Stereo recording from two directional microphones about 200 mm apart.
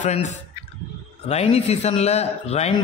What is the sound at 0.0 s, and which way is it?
A man's voice, 35° left (ahead or behind).